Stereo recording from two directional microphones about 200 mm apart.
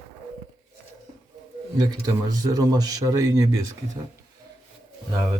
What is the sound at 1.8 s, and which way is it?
Speech, 20° right (ahead or behind).